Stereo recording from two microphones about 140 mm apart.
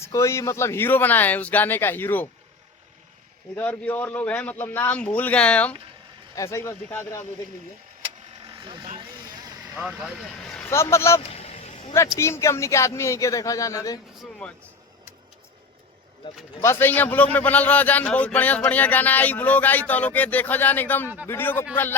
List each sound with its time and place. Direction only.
0.0 s speech: 20° left (ahead or behind)
3.5 s speech: 10° left (ahead or behind)
6.3 s speech: 20° left (ahead or behind)
8.4 s vehicle: 35° right (ahead or behind)
9.7 s speech: centre (ahead or behind)
10.7 s speech: 20° left (ahead or behind)
11.3 s a sound: 50° left (ahead or behind)
12.1 s speech: 20° left (ahead or behind)
16.6 s speech: 20° left (ahead or behind)